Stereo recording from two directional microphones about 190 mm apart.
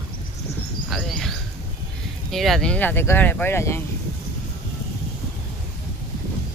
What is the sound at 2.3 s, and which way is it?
Speech, centre (ahead or behind).